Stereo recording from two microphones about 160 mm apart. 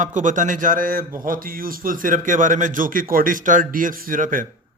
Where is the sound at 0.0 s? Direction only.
50° right (ahead or behind).